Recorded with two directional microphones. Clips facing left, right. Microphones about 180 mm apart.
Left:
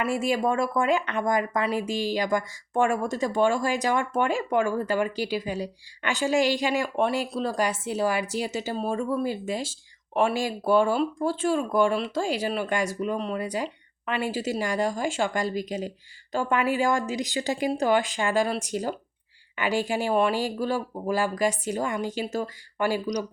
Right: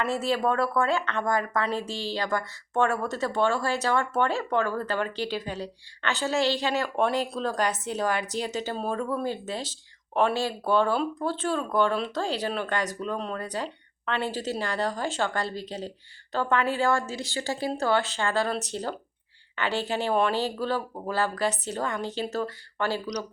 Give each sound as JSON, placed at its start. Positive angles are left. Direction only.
{"t": 0.0, "sound": "speech", "side_deg": 10}